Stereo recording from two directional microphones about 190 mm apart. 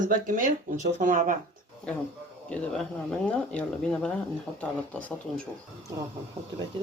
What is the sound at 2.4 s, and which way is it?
Speech, 5° left (ahead or behind).